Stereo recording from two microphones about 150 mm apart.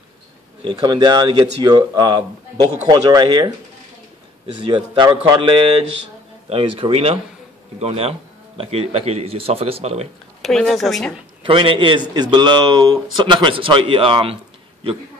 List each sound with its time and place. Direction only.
0.7 s a man's voice: 25° right (ahead or behind)
4.6 s a man's voice: 35° right (ahead or behind)
10.4 s speech: centre (ahead or behind)
11.4 s a man's voice: 35° right (ahead or behind)